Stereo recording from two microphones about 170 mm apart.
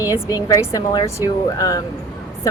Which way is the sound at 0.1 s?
20° left (ahead or behind).